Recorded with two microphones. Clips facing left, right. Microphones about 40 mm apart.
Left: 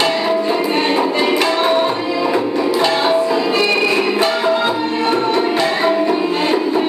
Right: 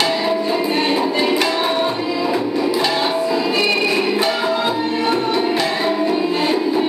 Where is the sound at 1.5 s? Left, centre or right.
Left.